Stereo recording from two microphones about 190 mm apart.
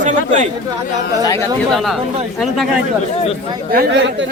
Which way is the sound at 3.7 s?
70° right (ahead or behind).